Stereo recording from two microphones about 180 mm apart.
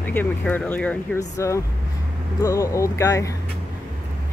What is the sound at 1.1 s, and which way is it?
Speech, 15° left (ahead or behind).